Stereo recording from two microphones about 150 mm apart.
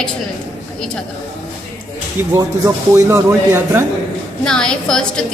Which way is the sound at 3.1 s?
15° right (ahead or behind).